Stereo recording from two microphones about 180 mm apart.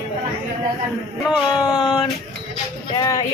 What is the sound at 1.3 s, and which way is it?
Speech, 20° left (ahead or behind).